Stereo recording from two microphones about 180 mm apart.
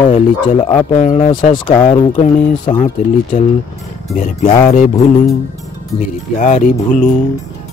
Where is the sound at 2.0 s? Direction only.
30° left (ahead or behind).